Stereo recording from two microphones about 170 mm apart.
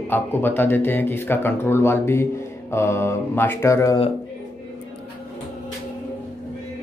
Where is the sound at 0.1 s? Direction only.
10° left (ahead or behind).